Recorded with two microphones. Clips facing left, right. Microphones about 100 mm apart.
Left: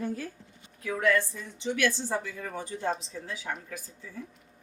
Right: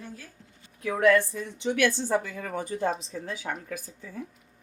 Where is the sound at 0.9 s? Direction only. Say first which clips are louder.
Right 5 dB; 60° right (ahead or behind).